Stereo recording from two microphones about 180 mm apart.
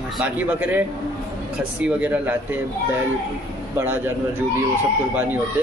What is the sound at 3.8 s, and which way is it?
Speech, 10° right (ahead or behind).